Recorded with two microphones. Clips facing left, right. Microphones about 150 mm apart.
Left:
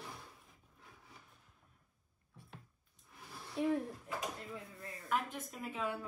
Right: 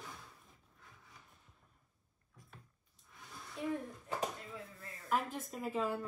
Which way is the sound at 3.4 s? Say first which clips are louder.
Left 5 dB; 30° left (ahead or behind).